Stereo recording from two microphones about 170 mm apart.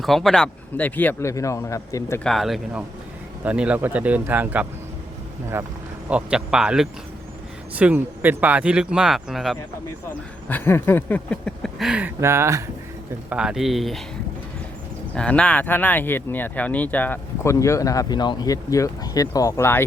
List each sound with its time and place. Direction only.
0.0 s speech: centre (ahead or behind); by 2.2 s 15° left (ahead or behind)
2.2 s speech: centre (ahead or behind)
10.5 s speech: 15° left (ahead or behind); by 12.6 s 15° right (ahead or behind)
13.3 s speech: 5° right (ahead or behind)
15.1 s speech: 5° left (ahead or behind)